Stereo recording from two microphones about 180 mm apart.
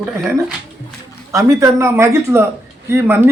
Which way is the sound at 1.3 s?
15° right (ahead or behind).